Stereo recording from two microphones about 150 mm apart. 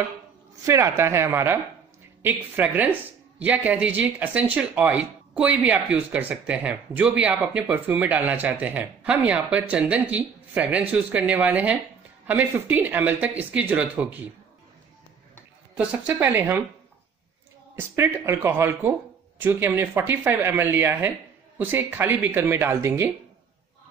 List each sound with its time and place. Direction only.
0.7 s speech: 20° right (ahead or behind)
15.7 s speech: 10° right (ahead or behind)
17.7 s speech: 15° right (ahead or behind)